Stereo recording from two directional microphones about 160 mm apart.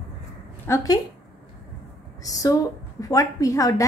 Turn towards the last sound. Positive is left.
turn(degrees=20)  # may be behind; listen again after turning